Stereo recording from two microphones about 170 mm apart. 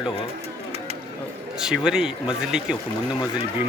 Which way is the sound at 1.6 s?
5° right (ahead or behind).